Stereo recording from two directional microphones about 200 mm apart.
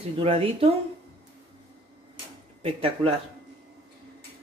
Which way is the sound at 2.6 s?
25° right (ahead or behind).